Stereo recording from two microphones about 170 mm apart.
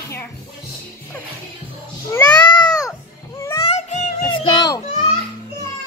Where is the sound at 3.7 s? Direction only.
40° left (ahead or behind).